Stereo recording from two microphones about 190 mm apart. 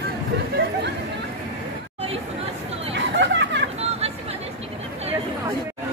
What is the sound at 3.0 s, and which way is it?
Chatter, 70° right (ahead or behind).